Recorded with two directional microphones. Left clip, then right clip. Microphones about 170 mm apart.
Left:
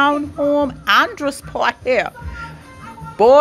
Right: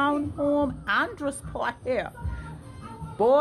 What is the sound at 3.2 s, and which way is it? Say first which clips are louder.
Speech: left 10 dB; 15° left (ahead or behind).